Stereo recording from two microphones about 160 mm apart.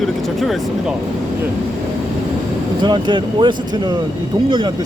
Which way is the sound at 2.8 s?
30° right (ahead or behind).